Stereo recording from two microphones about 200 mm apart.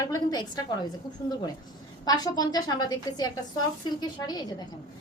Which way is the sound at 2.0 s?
20° left (ahead or behind).